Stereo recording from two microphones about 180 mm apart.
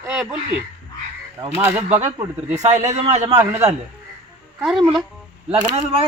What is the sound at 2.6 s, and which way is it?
Speech, 40° right (ahead or behind).